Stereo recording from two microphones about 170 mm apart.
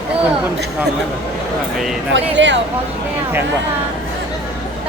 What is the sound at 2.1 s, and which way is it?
Speech, 90° right.